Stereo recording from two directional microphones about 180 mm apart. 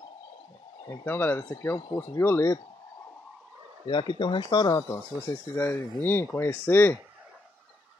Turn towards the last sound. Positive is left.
turn(degrees=10)  # may be behind; listen again after turning